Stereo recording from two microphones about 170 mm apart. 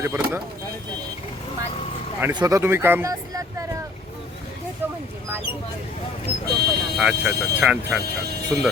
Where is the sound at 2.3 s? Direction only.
20° right (ahead or behind).